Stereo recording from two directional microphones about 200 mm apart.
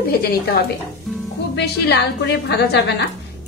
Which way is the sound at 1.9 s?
60° left (ahead or behind).